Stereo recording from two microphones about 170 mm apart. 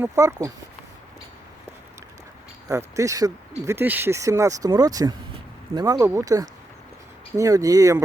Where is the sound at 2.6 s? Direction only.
20° right (ahead or behind).